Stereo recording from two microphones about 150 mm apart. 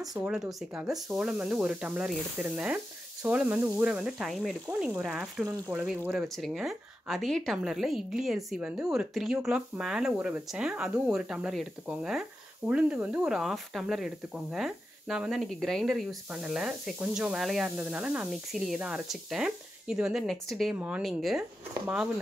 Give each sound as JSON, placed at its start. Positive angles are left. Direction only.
{"t": 0.2, "sound": "speech", "side_deg": -5}
{"t": 5.4, "sound": "speech", "side_deg": -15}
{"t": 6.2, "sound": "speech", "side_deg": 0}